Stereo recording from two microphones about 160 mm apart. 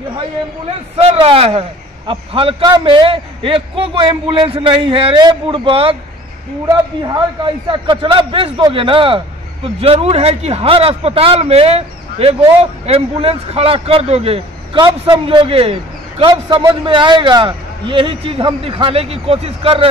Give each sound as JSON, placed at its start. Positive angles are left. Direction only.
{"t": 0.9, "sound": "a man's voice", "side_deg": -35}
{"t": 7.4, "sound": "a man's voice", "side_deg": -30}